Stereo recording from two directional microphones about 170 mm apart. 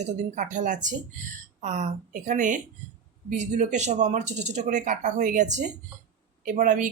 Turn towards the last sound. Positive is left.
turn(degrees=-50)  # may be behind; listen again after turning